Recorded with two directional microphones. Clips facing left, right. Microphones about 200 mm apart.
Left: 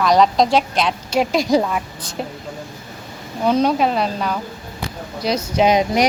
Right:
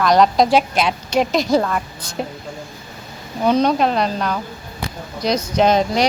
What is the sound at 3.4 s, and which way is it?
A woman's voice, 5° left (ahead or behind).